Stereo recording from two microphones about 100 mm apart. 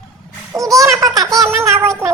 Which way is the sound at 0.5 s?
35° right (ahead or behind).